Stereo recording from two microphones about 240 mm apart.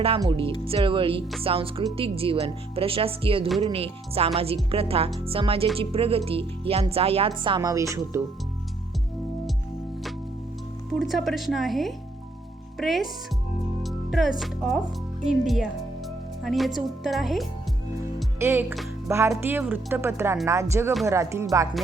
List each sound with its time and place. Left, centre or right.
0.0 s speech: right
10.8 s speech: centre